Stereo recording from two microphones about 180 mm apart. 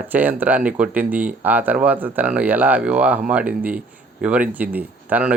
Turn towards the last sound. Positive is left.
turn(degrees=-10)  # may be behind; listen again after turning